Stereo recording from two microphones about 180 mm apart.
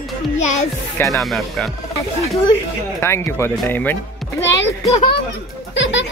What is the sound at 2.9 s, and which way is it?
Speech, 15° left (ahead or behind).